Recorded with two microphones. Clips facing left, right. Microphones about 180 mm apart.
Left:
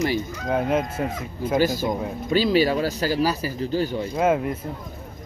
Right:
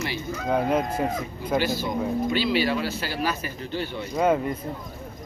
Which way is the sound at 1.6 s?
45° left (ahead or behind).